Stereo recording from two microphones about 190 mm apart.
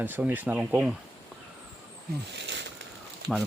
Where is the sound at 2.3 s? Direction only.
65° right (ahead or behind).